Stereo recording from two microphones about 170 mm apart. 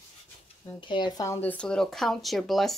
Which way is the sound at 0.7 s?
30° left (ahead or behind).